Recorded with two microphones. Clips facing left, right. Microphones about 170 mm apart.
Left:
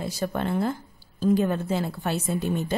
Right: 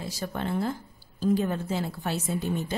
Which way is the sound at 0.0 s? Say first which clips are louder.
Left 4 dB; 60° left (ahead or behind).